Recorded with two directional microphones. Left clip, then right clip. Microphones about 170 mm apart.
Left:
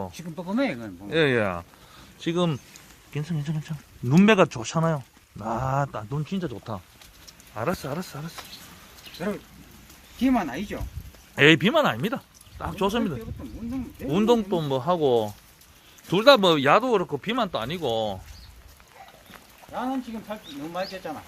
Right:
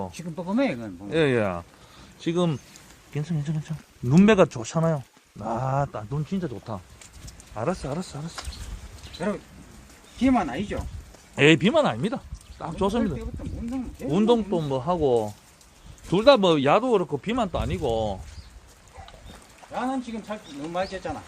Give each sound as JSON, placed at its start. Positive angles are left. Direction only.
{"t": 0.1, "sound": "speech", "side_deg": -45}
{"t": 1.1, "sound": "speech", "side_deg": -5}
{"t": 7.5, "sound": "speech", "side_deg": 0}
{"t": 9.2, "sound": "speech", "side_deg": -15}
{"t": 10.2, "sound": "speech", "side_deg": 0}
{"t": 14.3, "sound": "speech", "side_deg": 15}
{"t": 16.0, "sound": "speech", "side_deg": 5}
{"t": 19.9, "sound": "speech", "side_deg": -20}
{"t": 20.7, "sound": "speech", "side_deg": -30}